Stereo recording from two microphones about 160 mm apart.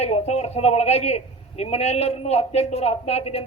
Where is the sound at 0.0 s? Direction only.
40° left (ahead or behind).